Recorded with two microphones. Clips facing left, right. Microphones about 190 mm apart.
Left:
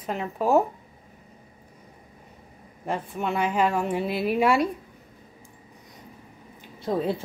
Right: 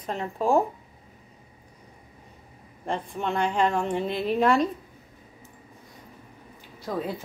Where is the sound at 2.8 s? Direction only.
5° left (ahead or behind).